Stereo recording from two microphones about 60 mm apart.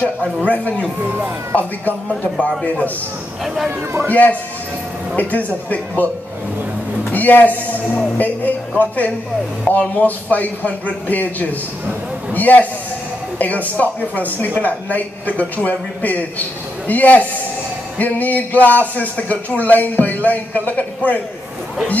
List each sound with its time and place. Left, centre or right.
0.5 s speech: left
1.1 s speech: right
3.4 s speech: centre
4.1 s speech: left
7.1 s a man's voice: left